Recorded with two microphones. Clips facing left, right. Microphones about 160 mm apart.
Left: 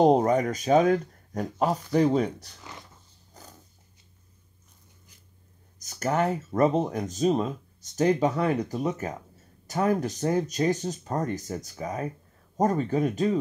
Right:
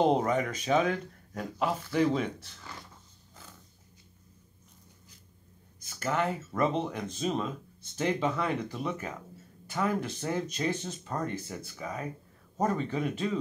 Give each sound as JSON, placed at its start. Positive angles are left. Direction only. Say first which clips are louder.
{"t": 0.0, "sound": "speech", "louder": "left 6 dB", "side_deg": 40}
{"t": 3.4, "sound": "dog", "louder": "left 4 dB", "side_deg": 40}
{"t": 5.8, "sound": "speech", "louder": "left 5 dB", "side_deg": 40}